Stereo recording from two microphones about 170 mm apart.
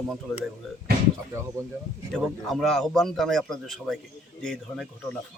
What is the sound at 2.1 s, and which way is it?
A man's voice, centre (ahead or behind).